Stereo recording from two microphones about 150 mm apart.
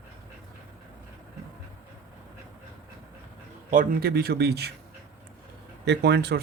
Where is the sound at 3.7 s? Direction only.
75° right (ahead or behind).